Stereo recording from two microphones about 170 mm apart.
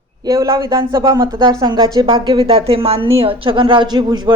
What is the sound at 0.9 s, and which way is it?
Speech, 20° right (ahead or behind).